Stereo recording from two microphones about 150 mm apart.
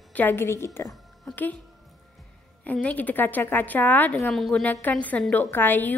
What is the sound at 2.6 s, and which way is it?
A woman's voice, 10° left (ahead or behind).